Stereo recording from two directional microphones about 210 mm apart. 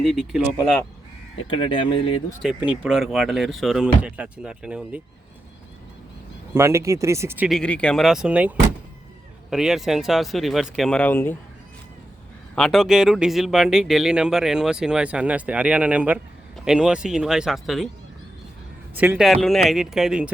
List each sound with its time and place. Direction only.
0.0 s speech: 5° right (ahead or behind)
1.5 s speech: 25° left (ahead or behind)
2.4 s speech: 5° right (ahead or behind)
6.5 s speech: 15° right (ahead or behind); by 11.3 s 10° left (ahead or behind)
12.5 s speech: centre (ahead or behind)
18.9 s speech: 5° right (ahead or behind)